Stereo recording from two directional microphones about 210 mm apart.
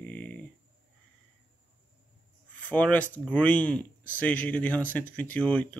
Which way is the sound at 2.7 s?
5° left (ahead or behind).